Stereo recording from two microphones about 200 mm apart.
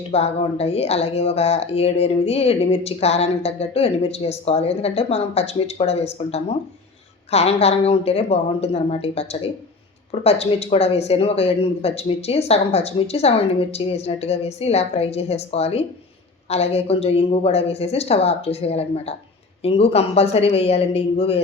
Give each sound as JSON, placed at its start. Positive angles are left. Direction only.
{"t": 0.1, "sound": "a man's voice", "side_deg": 30}